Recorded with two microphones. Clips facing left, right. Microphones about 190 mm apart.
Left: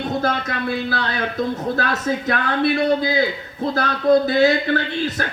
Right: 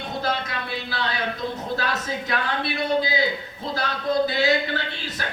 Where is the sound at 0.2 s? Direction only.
50° left (ahead or behind).